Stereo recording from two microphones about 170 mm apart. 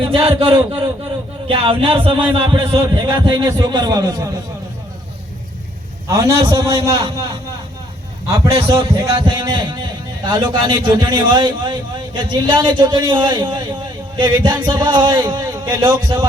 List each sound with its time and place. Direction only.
0.0 s a man's voice: 30° right (ahead or behind)
6.1 s a man's voice: 15° right (ahead or behind)
8.7 s a man's voice: 20° right (ahead or behind)